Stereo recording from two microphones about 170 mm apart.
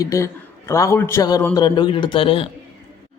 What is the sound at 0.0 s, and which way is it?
A man's voice, 20° left (ahead or behind).